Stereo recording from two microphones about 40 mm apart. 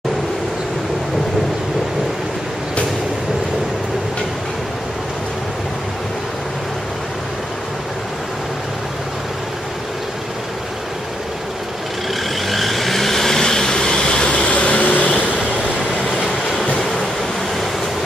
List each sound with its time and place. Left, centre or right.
12.4 s vehicle: centre
14.4 s vehicle: left